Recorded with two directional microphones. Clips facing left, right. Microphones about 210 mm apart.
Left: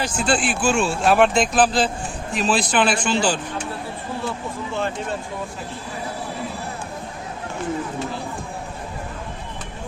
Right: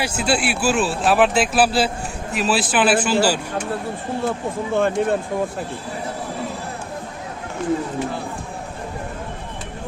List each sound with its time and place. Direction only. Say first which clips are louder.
0.0 s a man's voice: right 1 dB; 10° right (ahead or behind)
4.3 s speech: right 5 dB; 50° right (ahead or behind)